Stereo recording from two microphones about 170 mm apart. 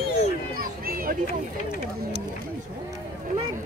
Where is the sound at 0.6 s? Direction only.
55° right (ahead or behind).